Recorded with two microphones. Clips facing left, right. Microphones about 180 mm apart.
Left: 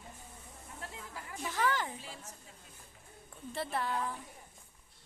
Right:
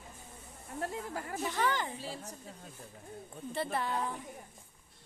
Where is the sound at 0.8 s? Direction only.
50° right (ahead or behind).